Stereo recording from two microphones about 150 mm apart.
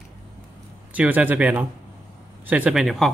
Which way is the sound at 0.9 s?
10° right (ahead or behind).